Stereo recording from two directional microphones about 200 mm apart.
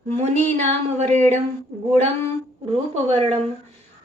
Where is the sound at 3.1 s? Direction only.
30° right (ahead or behind).